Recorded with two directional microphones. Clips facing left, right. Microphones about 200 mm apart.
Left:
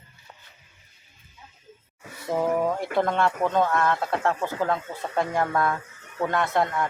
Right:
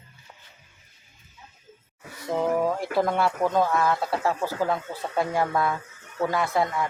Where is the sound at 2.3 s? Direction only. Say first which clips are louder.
Even; centre (ahead or behind).